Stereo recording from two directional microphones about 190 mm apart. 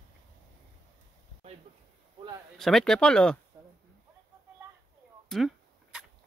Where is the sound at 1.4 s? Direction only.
35° right (ahead or behind).